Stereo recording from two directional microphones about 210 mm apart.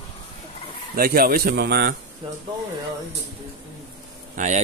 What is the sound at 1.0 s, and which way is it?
Speech, 45° right (ahead or behind).